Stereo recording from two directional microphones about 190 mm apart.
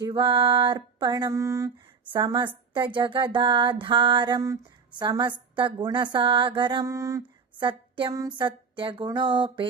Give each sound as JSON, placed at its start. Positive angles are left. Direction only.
{"t": 0.0, "sound": "speech", "side_deg": -25}